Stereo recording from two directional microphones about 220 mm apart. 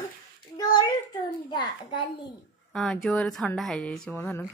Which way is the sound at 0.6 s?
20° left (ahead or behind).